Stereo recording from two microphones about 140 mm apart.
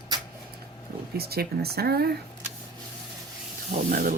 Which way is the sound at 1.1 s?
90° right.